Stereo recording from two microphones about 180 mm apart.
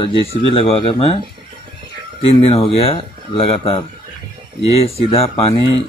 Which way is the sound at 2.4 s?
30° left (ahead or behind).